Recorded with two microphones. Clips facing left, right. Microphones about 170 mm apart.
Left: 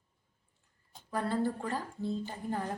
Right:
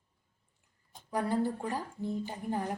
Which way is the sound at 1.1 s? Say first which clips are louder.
Right 1 dB; 15° right (ahead or behind).